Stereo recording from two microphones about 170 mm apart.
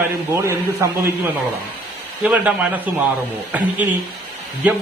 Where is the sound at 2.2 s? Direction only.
10° right (ahead or behind).